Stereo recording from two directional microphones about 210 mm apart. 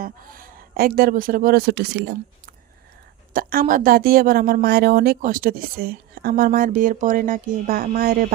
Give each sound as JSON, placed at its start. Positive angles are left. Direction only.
{"t": 0.0, "sound": "a woman's voice", "side_deg": -40}